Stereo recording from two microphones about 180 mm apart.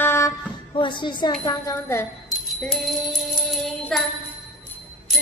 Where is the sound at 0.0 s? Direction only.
15° left (ahead or behind).